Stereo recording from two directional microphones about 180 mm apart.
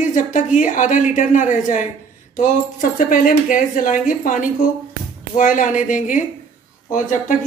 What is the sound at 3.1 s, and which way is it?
A woman's voice, 50° left (ahead or behind).